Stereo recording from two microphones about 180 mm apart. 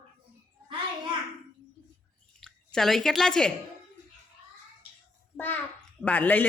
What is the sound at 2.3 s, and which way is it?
Speech, 5° left (ahead or behind).